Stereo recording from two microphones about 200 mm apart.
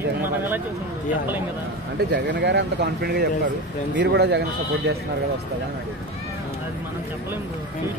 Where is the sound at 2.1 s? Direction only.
60° right (ahead or behind).